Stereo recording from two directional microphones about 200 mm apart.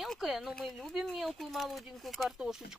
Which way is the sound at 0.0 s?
Centre (ahead or behind).